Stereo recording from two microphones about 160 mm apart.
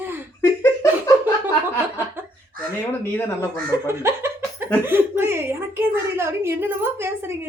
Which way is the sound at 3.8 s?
15° right (ahead or behind).